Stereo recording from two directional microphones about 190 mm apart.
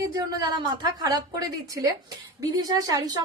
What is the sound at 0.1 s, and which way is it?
A woman's voice, 20° right (ahead or behind).